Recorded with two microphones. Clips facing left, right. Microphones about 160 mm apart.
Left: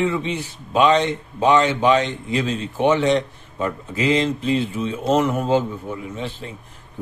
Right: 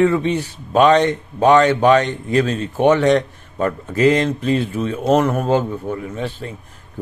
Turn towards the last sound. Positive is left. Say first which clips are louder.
# right 4 dB
turn(degrees=-45)  # may be behind; listen again after turning